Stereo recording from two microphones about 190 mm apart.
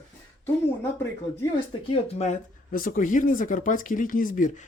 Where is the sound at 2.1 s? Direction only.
35° left (ahead or behind).